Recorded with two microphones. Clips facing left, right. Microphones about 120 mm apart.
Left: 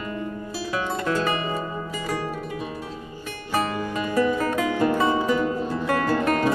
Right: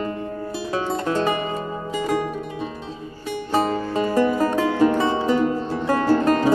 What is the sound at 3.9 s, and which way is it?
Music, 30° right (ahead or behind).